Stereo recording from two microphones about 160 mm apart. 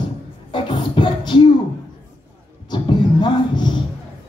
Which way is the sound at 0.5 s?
30° left (ahead or behind).